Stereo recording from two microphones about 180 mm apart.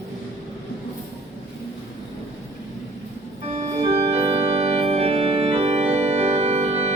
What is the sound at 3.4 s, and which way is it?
Organ, 40° right (ahead or behind).